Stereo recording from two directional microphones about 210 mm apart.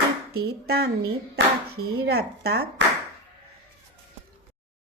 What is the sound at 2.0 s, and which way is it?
Speech, 50° right (ahead or behind).